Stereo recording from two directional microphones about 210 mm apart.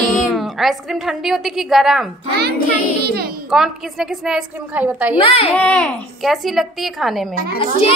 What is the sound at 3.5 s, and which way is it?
A woman's voice, centre (ahead or behind).